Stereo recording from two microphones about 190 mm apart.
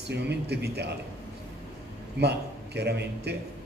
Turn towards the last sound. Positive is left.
turn(degrees=-60)  # may be behind; listen again after turning